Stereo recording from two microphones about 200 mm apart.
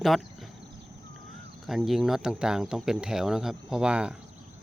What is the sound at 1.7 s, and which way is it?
Speech, centre (ahead or behind).